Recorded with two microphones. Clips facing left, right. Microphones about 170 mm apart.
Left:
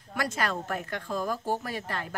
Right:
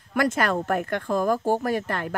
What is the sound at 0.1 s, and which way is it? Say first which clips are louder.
Speech: right 7 dB; 55° right (ahead or behind).